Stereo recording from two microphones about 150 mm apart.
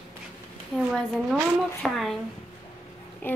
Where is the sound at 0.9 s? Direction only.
Centre (ahead or behind).